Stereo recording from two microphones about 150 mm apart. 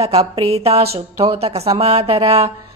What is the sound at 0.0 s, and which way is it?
A woman's voice, 40° right (ahead or behind).